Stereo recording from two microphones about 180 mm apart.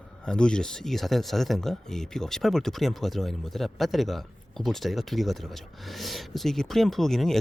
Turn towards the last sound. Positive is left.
turn(degrees=0)  # may be behind; listen again after turning